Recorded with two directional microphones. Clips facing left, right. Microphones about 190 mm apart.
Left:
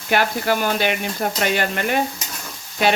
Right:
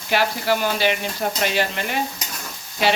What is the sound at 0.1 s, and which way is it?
Speech, 50° left (ahead or behind).